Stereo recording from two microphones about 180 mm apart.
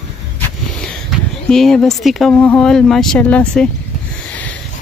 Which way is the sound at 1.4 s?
5° left (ahead or behind).